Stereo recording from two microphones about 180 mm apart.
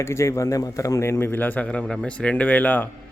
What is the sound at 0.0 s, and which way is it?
A man's voice, 15° left (ahead or behind).